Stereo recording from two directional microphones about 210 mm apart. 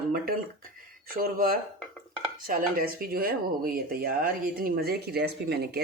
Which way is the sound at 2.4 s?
45° right (ahead or behind).